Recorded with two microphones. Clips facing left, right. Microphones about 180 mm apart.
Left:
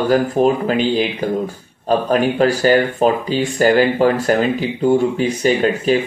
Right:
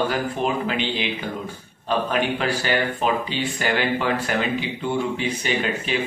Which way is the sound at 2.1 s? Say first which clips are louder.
Left 8 dB; 40° left (ahead or behind).